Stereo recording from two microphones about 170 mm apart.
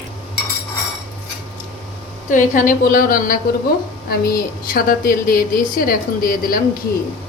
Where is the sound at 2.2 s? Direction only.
50° left (ahead or behind).